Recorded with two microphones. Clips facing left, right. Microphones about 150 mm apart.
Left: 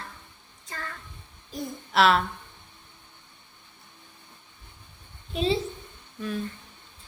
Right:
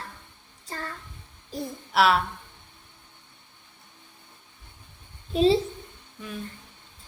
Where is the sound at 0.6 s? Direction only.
35° right (ahead or behind).